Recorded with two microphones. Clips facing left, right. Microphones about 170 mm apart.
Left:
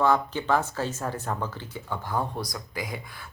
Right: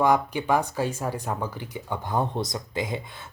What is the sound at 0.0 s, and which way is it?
Speech, 15° right (ahead or behind).